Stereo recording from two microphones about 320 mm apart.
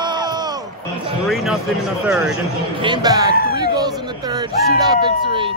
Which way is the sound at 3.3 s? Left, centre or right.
Left.